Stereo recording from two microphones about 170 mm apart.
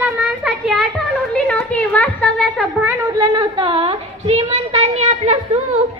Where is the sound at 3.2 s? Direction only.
25° right (ahead or behind).